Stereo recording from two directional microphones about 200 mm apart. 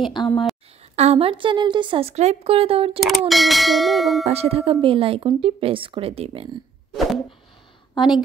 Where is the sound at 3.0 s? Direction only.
Centre (ahead or behind).